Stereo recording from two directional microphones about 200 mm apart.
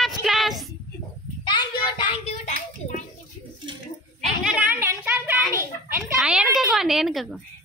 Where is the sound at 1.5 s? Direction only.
20° left (ahead or behind).